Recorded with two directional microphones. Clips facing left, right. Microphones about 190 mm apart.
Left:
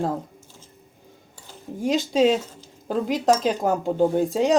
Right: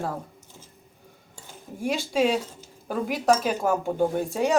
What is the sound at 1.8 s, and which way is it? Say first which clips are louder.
A woman's voice: left 4 dB; 20° left (ahead or behind).